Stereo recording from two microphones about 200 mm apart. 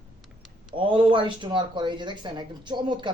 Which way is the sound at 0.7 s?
25° right (ahead or behind).